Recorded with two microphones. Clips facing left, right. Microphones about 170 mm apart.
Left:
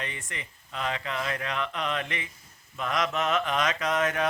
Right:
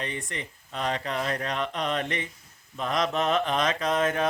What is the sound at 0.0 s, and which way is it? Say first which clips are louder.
Speech: right 4 dB; 35° right (ahead or behind).